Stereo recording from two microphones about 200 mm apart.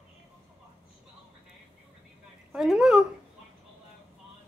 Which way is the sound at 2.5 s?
Centre (ahead or behind).